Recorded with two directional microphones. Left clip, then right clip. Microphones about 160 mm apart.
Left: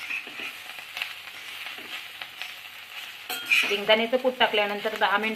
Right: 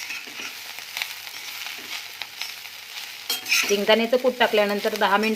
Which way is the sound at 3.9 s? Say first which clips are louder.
Right 4 dB; 60° right (ahead or behind).